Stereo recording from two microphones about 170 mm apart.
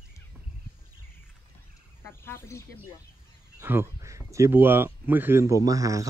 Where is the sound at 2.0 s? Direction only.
15° left (ahead or behind).